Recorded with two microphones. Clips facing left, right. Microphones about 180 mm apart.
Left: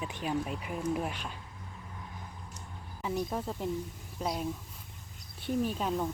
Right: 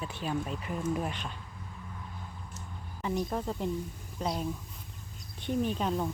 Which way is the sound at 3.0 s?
5° left (ahead or behind).